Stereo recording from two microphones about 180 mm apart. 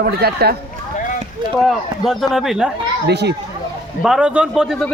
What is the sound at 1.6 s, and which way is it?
A man's voice, centre (ahead or behind).